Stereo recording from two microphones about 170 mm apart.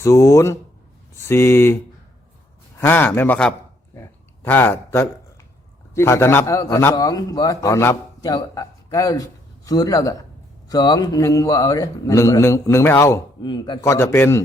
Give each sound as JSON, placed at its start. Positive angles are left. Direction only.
{"t": 0.0, "sound": "a man's voice", "side_deg": 15}